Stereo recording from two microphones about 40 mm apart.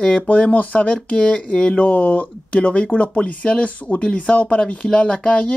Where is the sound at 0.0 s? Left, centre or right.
Left.